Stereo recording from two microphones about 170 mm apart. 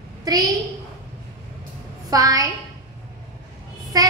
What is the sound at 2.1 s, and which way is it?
Speech, 20° right (ahead or behind).